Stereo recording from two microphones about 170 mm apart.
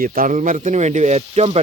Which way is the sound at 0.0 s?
55° right (ahead or behind).